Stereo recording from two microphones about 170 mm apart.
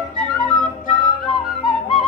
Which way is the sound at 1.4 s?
Centre (ahead or behind).